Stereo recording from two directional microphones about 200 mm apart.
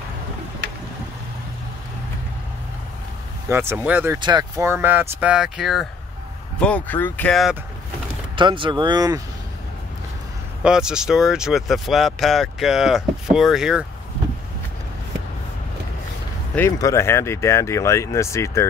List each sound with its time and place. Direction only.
3.4 s speech: 10° right (ahead or behind)
4.2 s speech: 20° right (ahead or behind); by 7.5 s 5° left (ahead or behind)
8.4 s speech: 25° right (ahead or behind)
10.6 s speech: 5° right (ahead or behind)
16.5 s speech: 15° left (ahead or behind)